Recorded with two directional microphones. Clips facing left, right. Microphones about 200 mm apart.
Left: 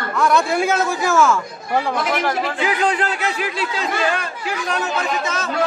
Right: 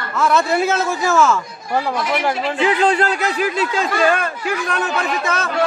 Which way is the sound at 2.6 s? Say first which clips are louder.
Right 5 dB; 35° right (ahead or behind).